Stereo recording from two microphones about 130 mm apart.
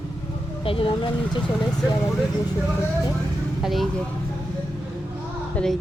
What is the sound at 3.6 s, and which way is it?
Speech, centre (ahead or behind).